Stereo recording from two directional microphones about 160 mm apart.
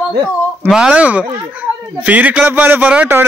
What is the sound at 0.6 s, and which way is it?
Speech, 5° right (ahead or behind).